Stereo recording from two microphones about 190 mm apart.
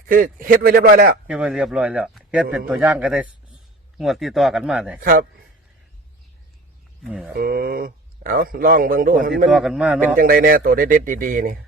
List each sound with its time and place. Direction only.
0.1 s speech: 45° right (ahead or behind)
1.3 s a man's voice: 5° right (ahead or behind)
4.9 s speech: 45° right (ahead or behind)
7.0 s a man's voice: 5° right (ahead or behind)
7.3 s speech: 50° right (ahead or behind)
9.6 s a man's voice: 5° right (ahead or behind)
10.2 s speech: 50° right (ahead or behind)